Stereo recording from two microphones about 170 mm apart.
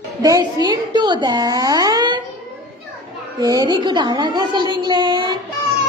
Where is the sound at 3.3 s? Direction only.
25° right (ahead or behind).